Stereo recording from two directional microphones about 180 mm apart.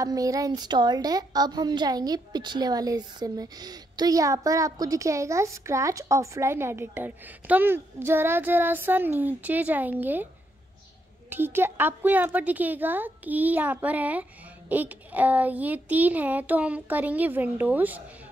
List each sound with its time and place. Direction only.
0.0 s a woman's voice: 20° right (ahead or behind)
11.2 s a woman's voice: 10° right (ahead or behind)